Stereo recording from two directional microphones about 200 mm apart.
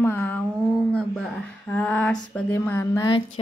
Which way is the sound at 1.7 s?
5° left (ahead or behind).